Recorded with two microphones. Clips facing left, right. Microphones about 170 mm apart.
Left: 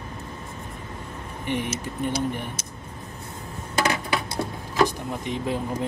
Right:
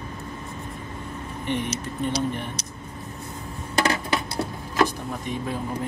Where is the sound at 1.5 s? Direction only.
55° left (ahead or behind).